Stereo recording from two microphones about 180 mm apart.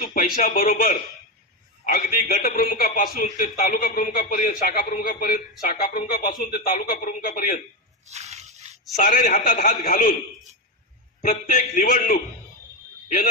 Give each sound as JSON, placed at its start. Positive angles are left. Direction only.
{"t": 0.0, "sound": "a man's voice", "side_deg": 50}
{"t": 8.1, "sound": "a sound", "side_deg": -40}
{"t": 8.9, "sound": "a man's voice", "side_deg": 50}
{"t": 9.3, "sound": "a man's voice", "side_deg": 40}
{"t": 11.1, "sound": "a man's voice", "side_deg": 50}